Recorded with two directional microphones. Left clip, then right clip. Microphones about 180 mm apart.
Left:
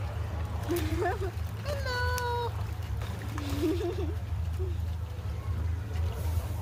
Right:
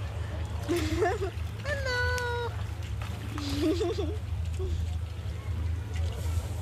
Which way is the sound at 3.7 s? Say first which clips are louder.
Right 3 dB; 50° right (ahead or behind).